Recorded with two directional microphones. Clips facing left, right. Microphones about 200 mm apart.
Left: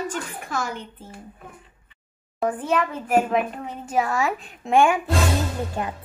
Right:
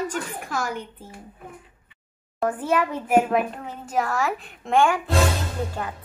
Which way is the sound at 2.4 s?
5° right (ahead or behind).